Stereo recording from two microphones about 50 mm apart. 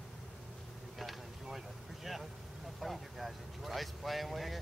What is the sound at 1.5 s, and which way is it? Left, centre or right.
Vehicle, centre.